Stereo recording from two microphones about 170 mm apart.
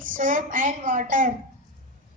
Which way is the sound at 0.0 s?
50° right (ahead or behind).